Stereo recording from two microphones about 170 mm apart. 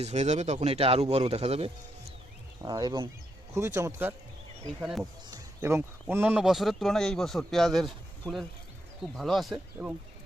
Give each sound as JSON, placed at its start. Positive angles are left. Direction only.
{"t": 0.0, "sound": "speech", "side_deg": -40}
{"t": 2.6, "sound": "speech", "side_deg": -25}
{"t": 4.8, "sound": "speech", "side_deg": 0}
{"t": 5.6, "sound": "speech", "side_deg": -15}
{"t": 9.8, "sound": "speech", "side_deg": -10}